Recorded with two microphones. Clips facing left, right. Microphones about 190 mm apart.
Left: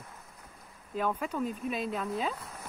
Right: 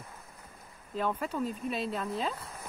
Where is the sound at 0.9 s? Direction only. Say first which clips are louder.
Even; 5° left (ahead or behind).